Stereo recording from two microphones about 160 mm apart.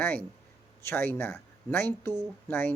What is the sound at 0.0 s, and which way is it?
A woman's voice, 10° left (ahead or behind).